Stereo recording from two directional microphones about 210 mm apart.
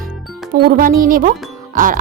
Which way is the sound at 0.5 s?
45° right (ahead or behind).